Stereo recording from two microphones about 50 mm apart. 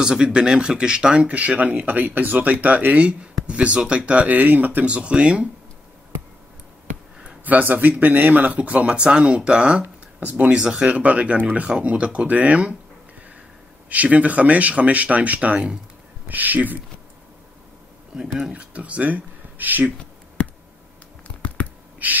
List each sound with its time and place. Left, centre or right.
0.0 s speech: centre
1.3 s speech: right
4.8 s speech: right
7.4 s speech: right
10.5 s speech: centre
13.8 s speech: right
18.1 s speech: centre
18.5 s speech: right
22.0 s speech: right